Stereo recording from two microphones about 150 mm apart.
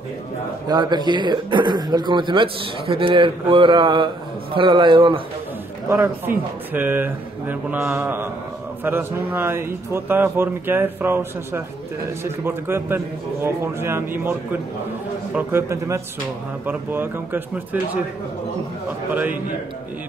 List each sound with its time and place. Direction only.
0.7 s speech: 30° right (ahead or behind)
5.9 s speech: 10° right (ahead or behind)